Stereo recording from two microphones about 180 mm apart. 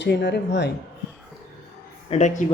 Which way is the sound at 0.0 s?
70° left (ahead or behind).